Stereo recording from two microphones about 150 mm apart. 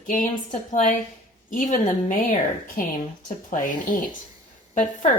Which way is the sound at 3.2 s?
60° left (ahead or behind).